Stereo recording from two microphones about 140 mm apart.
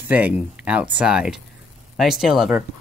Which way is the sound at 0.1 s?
10° right (ahead or behind).